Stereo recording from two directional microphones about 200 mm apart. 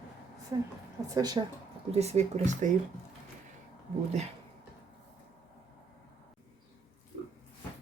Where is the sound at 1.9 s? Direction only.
35° right (ahead or behind).